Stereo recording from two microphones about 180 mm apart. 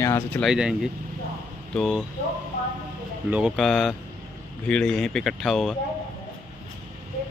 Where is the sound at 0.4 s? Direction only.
5° right (ahead or behind).